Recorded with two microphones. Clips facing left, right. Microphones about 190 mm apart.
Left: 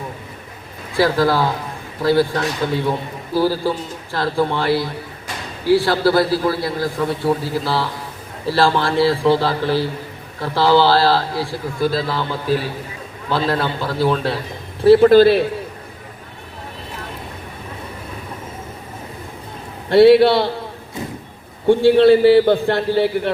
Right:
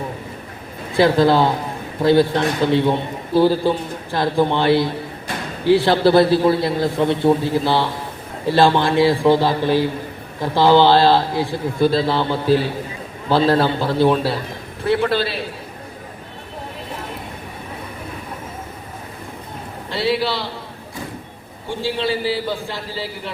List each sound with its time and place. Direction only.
0.9 s a man's voice: 20° right (ahead or behind)
14.8 s a man's voice: 40° left (ahead or behind)
19.9 s a man's voice: 60° left (ahead or behind)
21.7 s a man's voice: 60° left (ahead or behind)